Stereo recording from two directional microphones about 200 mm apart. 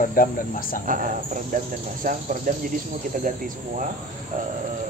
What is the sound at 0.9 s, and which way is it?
Cricket, 40° right (ahead or behind).